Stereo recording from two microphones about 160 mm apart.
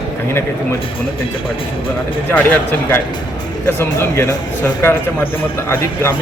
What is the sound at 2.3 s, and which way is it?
A man's voice, 10° left (ahead or behind).